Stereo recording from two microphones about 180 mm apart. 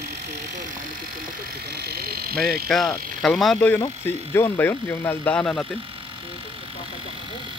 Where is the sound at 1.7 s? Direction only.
60° right (ahead or behind).